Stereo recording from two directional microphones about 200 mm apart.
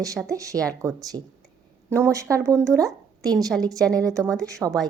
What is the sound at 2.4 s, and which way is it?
Speech, 15° right (ahead or behind).